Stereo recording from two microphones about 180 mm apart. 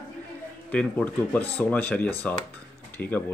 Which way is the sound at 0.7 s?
5° left (ahead or behind).